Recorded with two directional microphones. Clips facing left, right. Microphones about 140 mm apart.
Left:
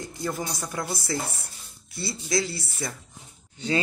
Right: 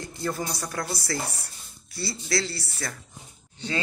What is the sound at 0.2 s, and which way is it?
Speech, 15° left (ahead or behind).